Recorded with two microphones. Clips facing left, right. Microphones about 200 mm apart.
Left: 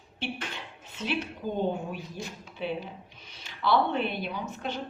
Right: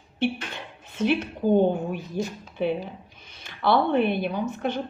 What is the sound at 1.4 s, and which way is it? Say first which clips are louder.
A woman's voice: right 11 dB; 50° right (ahead or behind).